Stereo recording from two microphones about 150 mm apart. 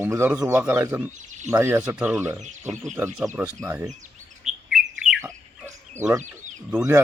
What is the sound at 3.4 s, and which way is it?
Speech, 15° right (ahead or behind).